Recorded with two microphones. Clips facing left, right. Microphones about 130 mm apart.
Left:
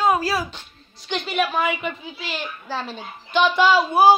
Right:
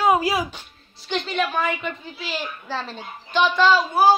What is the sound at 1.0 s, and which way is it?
Speech, 5° left (ahead or behind).